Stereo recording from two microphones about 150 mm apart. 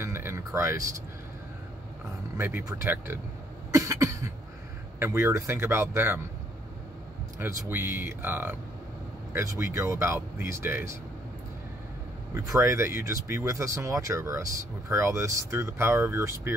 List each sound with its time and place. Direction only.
0.0 s a sound: 15° right (ahead or behind)
2.3 s speech: 15° right (ahead or behind)
3.7 s cough: 20° right (ahead or behind)
4.9 s speech: 15° right (ahead or behind)
7.3 s speech: 15° right (ahead or behind)
12.4 s speech: 20° right (ahead or behind)